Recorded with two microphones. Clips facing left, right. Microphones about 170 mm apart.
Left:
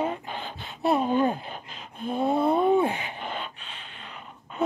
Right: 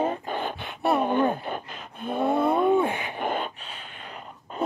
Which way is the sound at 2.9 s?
50° right (ahead or behind).